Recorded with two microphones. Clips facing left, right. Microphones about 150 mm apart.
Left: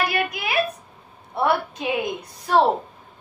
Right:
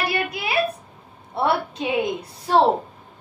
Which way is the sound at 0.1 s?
30° right (ahead or behind).